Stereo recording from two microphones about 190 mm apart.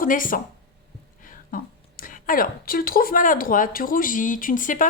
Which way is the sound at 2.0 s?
50° left (ahead or behind).